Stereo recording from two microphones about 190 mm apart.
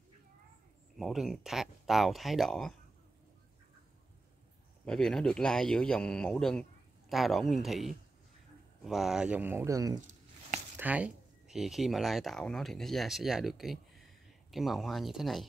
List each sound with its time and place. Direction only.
0.9 s speech: centre (ahead or behind)
4.8 s speech: 5° left (ahead or behind)